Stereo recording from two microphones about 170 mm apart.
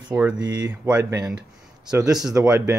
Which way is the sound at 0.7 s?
10° right (ahead or behind).